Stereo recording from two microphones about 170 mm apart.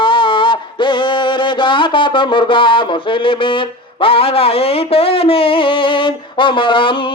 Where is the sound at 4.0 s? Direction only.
35° left (ahead or behind).